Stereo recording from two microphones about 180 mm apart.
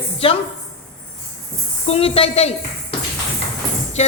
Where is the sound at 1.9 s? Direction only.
35° left (ahead or behind).